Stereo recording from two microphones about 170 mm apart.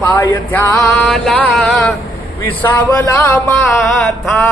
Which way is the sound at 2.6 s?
15° left (ahead or behind).